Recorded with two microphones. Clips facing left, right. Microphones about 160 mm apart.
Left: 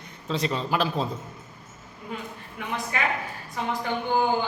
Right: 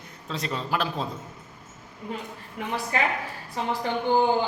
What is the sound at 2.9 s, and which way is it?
Speech, 35° right (ahead or behind).